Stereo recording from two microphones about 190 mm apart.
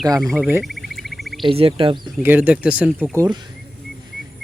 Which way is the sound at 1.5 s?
30° right (ahead or behind).